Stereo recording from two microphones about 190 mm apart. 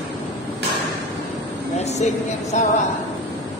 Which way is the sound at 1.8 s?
35° left (ahead or behind).